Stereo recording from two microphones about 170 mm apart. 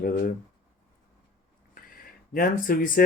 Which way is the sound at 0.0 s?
55° left (ahead or behind).